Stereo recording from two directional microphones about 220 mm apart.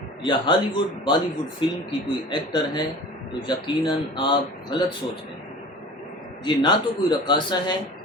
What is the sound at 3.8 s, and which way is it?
Speech, 20° left (ahead or behind).